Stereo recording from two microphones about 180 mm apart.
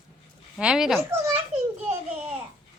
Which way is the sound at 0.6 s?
5° right (ahead or behind).